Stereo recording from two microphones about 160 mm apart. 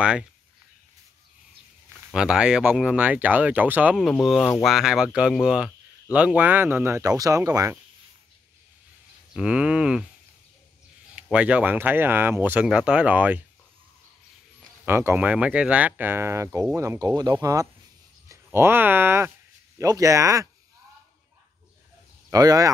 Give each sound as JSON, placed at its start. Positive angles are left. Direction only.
{"t": 0.0, "sound": "speech", "side_deg": -5}
{"t": 2.0, "sound": "speech", "side_deg": -5}
{"t": 3.9, "sound": "speech", "side_deg": 0}
{"t": 9.3, "sound": "speech", "side_deg": -5}
{"t": 11.1, "sound": "speech", "side_deg": -5}
{"t": 14.9, "sound": "speech", "side_deg": -15}
{"t": 22.3, "sound": "speech", "side_deg": -25}